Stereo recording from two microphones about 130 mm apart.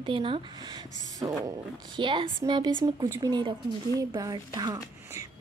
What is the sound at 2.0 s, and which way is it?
A woman's voice, 40° right (ahead or behind).